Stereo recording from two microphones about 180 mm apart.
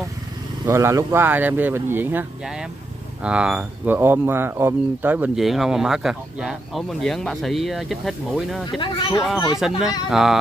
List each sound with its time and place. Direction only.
0.7 s speech: 15° right (ahead or behind); by 8.6 s centre (ahead or behind)
8.7 s speech: 25° left (ahead or behind)
9.6 s speech: 5° right (ahead or behind)